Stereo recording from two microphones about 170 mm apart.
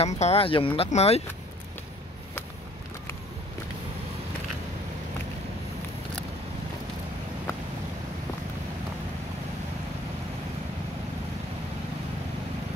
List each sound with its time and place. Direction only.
0.0 s speech: 35° left (ahead or behind)